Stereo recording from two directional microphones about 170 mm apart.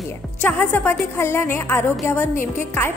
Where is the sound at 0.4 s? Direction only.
10° left (ahead or behind).